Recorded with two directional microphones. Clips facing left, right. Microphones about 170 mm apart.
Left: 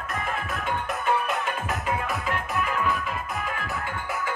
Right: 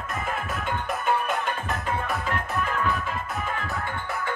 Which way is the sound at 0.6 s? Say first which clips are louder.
Even; centre (ahead or behind).